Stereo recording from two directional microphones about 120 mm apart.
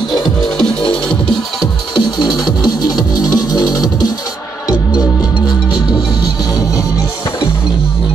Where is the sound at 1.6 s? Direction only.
35° left (ahead or behind).